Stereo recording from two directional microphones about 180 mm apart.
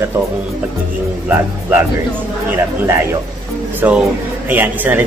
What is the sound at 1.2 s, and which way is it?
A man's voice, 10° right (ahead or behind).